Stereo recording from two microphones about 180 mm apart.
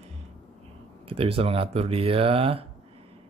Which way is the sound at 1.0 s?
30° right (ahead or behind).